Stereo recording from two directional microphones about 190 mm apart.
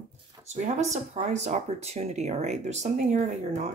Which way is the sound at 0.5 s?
35° right (ahead or behind).